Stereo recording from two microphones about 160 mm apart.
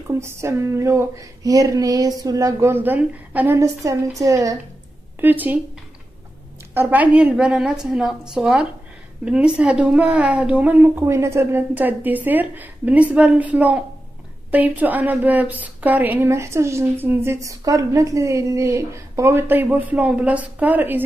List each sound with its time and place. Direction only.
0.2 s a sound: 15° right (ahead or behind)
5.2 s a woman's voice: 10° right (ahead or behind)
6.7 s a woman's voice: 10° right (ahead or behind)